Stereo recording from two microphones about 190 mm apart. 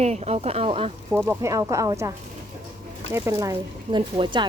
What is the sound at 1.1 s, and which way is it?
Speech, 15° right (ahead or behind).